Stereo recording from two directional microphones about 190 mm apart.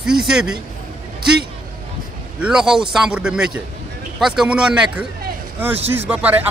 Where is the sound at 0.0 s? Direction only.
5° right (ahead or behind).